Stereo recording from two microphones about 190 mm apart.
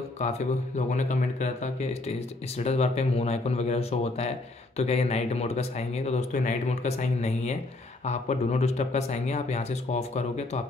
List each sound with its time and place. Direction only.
0.2 s speech: 40° left (ahead or behind)